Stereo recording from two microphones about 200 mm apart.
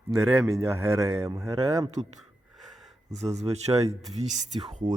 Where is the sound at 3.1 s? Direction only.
35° right (ahead or behind).